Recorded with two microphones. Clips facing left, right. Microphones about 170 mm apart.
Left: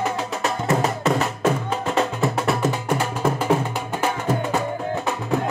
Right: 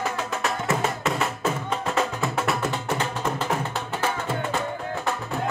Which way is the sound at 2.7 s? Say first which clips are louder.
Left 3 dB; 10° left (ahead or behind).